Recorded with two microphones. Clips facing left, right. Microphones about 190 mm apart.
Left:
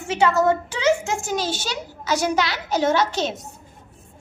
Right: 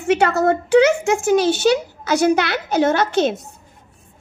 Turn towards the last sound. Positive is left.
turn(degrees=-55)  # may be behind; listen again after turning